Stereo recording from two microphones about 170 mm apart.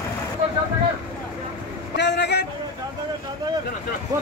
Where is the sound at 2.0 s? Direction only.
80° left.